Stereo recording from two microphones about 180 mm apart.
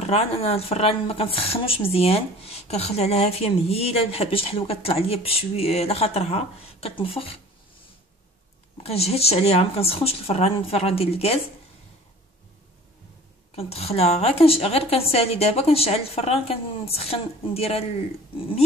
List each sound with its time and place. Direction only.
0.0 s a woman's voice: 35° left (ahead or behind)
8.8 s a woman's voice: 35° left (ahead or behind)
13.6 s a woman's voice: 35° left (ahead or behind)